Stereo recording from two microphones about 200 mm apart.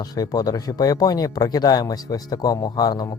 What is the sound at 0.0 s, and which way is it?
Speech, 20° left (ahead or behind).